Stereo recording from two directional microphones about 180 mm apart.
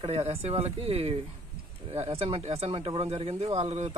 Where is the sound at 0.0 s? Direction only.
35° right (ahead or behind).